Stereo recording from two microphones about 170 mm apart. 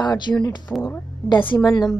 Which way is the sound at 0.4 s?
25° left (ahead or behind).